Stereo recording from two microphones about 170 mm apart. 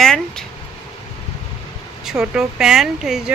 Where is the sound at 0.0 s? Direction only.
5° left (ahead or behind).